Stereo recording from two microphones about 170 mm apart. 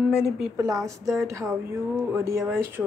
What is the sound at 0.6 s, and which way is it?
Speech, 20° right (ahead or behind).